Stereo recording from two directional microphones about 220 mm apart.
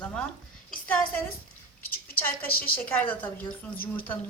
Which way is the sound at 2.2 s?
10° left (ahead or behind).